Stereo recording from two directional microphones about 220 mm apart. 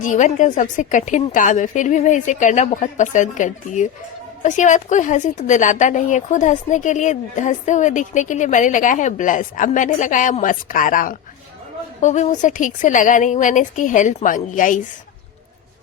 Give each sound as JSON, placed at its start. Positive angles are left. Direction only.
{"t": 0.0, "sound": "a woman's voice", "side_deg": 35}